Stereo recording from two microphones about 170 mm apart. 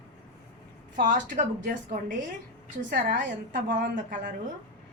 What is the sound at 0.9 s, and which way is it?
A woman's voice, 50° right (ahead or behind).